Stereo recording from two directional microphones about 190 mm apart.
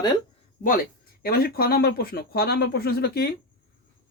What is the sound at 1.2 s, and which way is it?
Speech, 55° left (ahead or behind).